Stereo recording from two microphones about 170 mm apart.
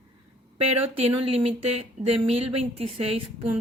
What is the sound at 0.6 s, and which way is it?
Speech, 35° right (ahead or behind).